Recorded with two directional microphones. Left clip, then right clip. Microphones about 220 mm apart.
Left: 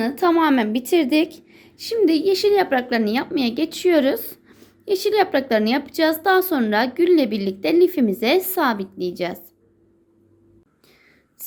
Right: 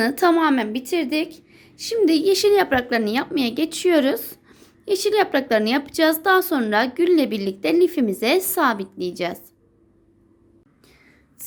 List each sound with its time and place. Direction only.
0.0 s a woman's voice: 15° right (ahead or behind)
0.3 s a woman's voice: 5° left (ahead or behind)